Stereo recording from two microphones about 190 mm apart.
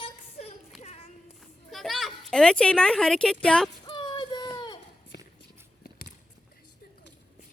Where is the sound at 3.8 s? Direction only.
25° left (ahead or behind).